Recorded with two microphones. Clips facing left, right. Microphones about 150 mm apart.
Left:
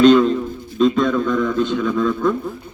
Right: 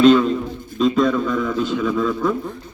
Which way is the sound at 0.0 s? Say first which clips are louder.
Left 1 dB; 5° right (ahead or behind).